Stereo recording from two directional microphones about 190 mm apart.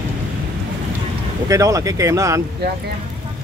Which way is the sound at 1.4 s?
15° right (ahead or behind).